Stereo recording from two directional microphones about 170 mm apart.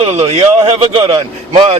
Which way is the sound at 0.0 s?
40° right (ahead or behind).